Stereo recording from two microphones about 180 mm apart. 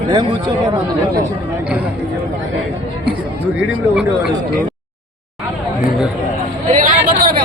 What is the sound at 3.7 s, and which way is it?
Speech, 5° right (ahead or behind).